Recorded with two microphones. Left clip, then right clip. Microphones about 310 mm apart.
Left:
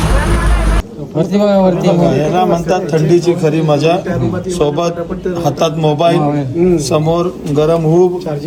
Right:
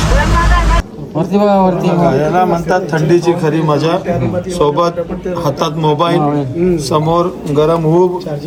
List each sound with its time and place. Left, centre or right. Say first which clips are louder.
1.3 s a man's voice: right 2 dB; centre
1.5 s a man's voice: left 1 dB; centre